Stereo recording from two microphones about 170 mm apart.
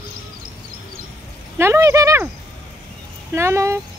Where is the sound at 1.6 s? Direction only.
15° right (ahead or behind).